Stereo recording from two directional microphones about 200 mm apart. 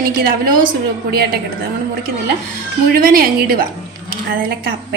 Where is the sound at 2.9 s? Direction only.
45° right (ahead or behind).